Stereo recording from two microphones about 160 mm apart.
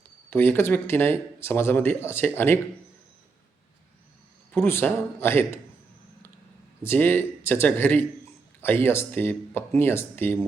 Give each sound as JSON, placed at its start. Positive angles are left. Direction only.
{"t": 0.3, "sound": "speech", "side_deg": 15}
{"t": 4.5, "sound": "speech", "side_deg": 15}
{"t": 6.8, "sound": "speech", "side_deg": 15}